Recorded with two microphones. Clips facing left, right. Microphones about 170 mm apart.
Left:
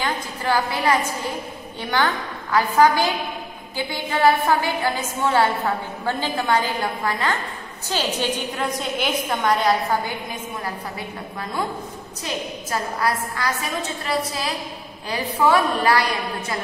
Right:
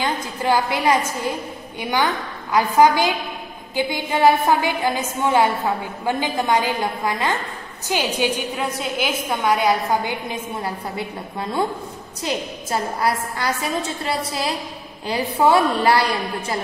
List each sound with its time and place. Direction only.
0.0 s a woman's voice: 20° right (ahead or behind)
12.7 s a woman's voice: 25° right (ahead or behind)
15.0 s a woman's voice: 25° right (ahead or behind)